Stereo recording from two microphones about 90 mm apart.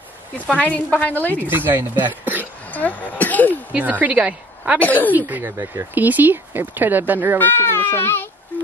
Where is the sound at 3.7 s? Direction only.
15° right (ahead or behind).